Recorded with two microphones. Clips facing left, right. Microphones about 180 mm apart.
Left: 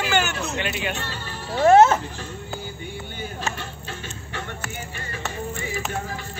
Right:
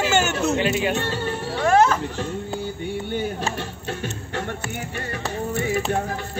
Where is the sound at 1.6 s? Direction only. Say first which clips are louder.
Left 4 dB; 25° left (ahead or behind).